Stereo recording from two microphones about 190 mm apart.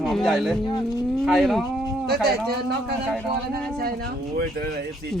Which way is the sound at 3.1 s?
5° left (ahead or behind).